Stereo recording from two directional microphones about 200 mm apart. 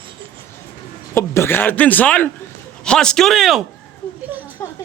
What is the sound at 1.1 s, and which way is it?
A woman's voice, 10° left (ahead or behind).